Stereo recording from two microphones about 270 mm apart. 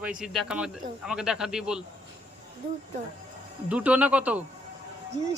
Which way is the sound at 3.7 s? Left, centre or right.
Centre.